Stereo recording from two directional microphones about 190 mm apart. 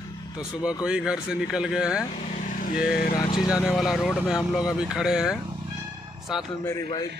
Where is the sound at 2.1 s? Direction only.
40° left (ahead or behind).